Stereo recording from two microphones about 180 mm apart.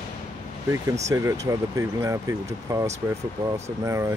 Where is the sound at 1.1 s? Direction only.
20° right (ahead or behind).